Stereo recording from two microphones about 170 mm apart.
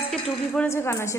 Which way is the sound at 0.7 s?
15° left (ahead or behind).